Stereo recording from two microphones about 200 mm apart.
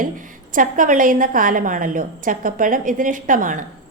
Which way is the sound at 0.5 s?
40° right (ahead or behind).